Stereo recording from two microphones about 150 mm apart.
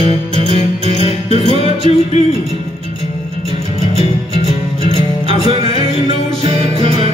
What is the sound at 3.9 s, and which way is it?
Music, 40° right (ahead or behind).